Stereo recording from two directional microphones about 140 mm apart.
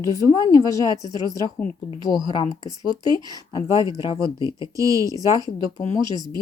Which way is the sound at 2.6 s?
30° right (ahead or behind).